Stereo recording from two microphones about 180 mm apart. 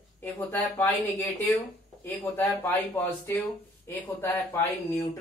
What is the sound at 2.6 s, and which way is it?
Speech, 20° left (ahead or behind).